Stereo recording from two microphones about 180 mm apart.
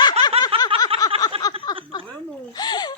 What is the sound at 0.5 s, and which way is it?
Snicker, 30° right (ahead or behind).